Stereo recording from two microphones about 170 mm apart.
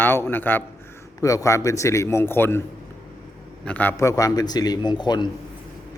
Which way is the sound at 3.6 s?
10° left (ahead or behind).